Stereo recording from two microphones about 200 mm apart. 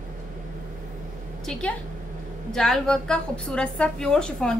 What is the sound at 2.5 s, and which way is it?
A woman's voice, centre (ahead or behind).